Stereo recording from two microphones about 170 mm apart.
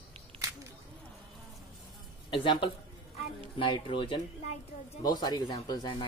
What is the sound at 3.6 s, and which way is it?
Speech, 30° left (ahead or behind).